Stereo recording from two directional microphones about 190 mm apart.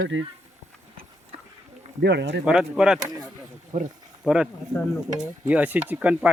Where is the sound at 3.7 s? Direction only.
40° right (ahead or behind).